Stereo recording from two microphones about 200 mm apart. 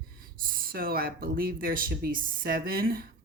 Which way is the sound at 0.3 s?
45° right (ahead or behind).